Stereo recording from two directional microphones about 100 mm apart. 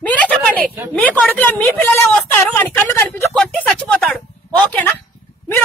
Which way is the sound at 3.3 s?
5° left (ahead or behind).